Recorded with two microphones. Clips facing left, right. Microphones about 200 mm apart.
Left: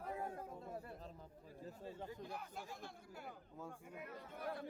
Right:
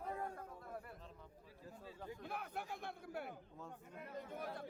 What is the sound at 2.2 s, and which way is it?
Speech, 60° right (ahead or behind).